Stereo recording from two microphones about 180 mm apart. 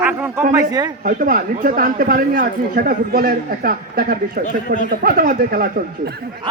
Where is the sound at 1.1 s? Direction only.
50° right (ahead or behind).